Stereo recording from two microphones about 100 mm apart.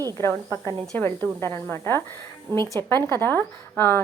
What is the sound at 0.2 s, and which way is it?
A woman's voice, 30° left (ahead or behind).